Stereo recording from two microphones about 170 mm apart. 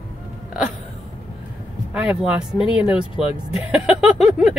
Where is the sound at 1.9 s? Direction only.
5° right (ahead or behind).